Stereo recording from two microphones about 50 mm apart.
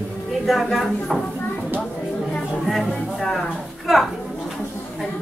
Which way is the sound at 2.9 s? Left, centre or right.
Centre.